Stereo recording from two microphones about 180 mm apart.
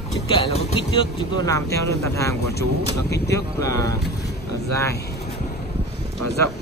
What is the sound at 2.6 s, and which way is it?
Speech, 65° left (ahead or behind).